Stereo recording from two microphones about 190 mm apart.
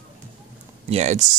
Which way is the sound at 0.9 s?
35° right (ahead or behind).